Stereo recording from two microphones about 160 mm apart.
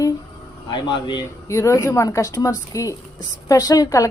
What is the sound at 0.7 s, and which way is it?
Speech, 30° left (ahead or behind).